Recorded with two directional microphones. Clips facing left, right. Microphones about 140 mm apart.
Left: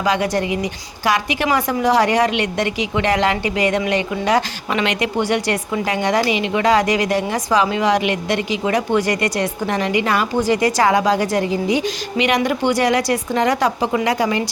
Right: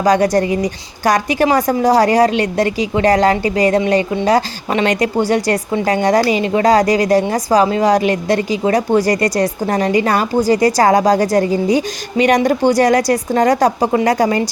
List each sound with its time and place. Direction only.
0.0 s a woman's voice: 40° right (ahead or behind)